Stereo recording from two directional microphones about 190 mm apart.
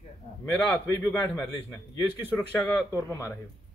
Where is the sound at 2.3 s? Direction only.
5° left (ahead or behind).